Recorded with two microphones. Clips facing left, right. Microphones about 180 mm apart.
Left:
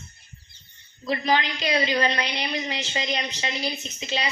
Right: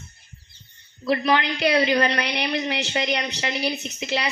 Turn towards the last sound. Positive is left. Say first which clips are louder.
# right 3 dB
turn(degrees=-70)  # may be behind; listen again after turning